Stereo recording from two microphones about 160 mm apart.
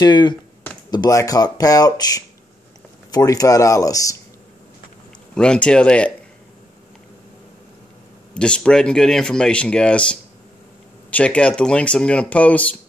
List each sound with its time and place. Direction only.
0.0 s speech: 30° left (ahead or behind)
5.3 s speech: 5° left (ahead or behind)
8.4 s speech: 5° left (ahead or behind)